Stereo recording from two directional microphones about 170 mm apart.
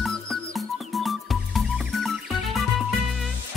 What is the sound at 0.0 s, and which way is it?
Music, centre (ahead or behind).